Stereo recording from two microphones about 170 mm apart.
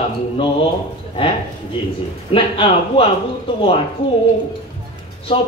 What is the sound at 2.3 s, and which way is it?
Speech, 30° left (ahead or behind).